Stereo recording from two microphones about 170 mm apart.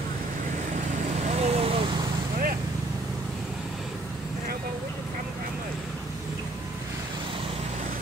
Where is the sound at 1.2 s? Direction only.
40° right (ahead or behind).